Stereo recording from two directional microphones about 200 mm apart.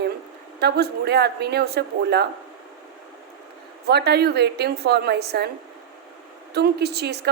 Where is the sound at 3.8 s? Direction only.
55° right (ahead or behind).